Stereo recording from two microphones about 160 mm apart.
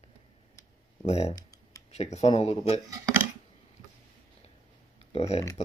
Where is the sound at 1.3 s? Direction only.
20° left (ahead or behind).